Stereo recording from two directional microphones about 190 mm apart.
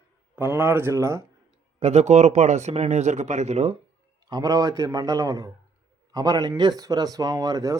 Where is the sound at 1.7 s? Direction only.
35° right (ahead or behind).